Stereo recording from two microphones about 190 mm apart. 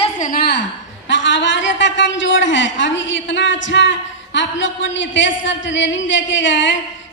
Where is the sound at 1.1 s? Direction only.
75° left (ahead or behind).